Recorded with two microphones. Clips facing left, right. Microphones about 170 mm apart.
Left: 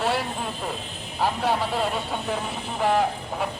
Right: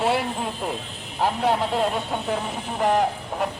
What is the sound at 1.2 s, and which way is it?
A man's voice, centre (ahead or behind).